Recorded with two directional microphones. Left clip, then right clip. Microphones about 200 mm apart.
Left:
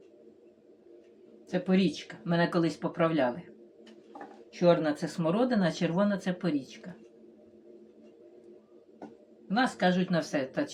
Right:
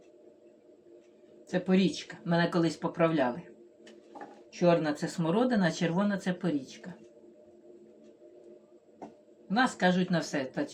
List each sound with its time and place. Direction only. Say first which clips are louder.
1.5 s speech: even; 5° left (ahead or behind)
4.5 s speech: left 1 dB; 5° left (ahead or behind)
9.5 s speech: even; 5° left (ahead or behind)